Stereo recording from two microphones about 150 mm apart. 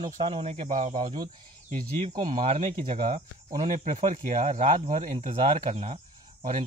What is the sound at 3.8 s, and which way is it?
Speech, 55° right (ahead or behind).